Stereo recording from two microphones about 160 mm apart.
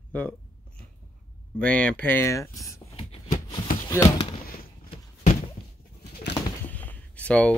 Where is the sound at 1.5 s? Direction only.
5° left (ahead or behind).